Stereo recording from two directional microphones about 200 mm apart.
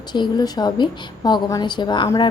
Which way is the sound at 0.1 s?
20° left (ahead or behind).